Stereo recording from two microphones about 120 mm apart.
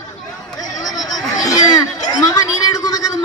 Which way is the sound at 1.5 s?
35° left (ahead or behind).